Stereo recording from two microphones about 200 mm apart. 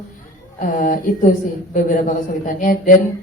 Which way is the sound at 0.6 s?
45° left (ahead or behind).